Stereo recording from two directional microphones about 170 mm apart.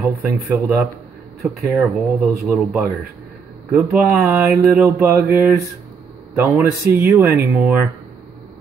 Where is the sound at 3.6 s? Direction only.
10° right (ahead or behind).